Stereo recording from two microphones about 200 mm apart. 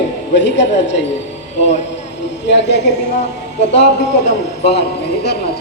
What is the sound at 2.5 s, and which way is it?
Speech, 60° left (ahead or behind).